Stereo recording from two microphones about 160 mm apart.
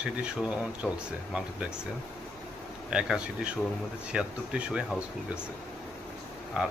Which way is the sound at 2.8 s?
5° right (ahead or behind).